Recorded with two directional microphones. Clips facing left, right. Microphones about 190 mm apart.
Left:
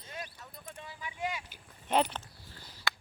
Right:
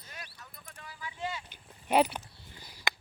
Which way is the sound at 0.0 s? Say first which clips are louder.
Left 6 dB; 25° left (ahead or behind).